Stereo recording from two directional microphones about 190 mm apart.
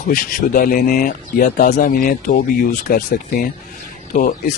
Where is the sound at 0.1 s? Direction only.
50° left (ahead or behind).